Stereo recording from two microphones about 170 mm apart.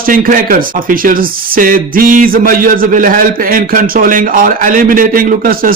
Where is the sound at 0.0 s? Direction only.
55° right (ahead or behind).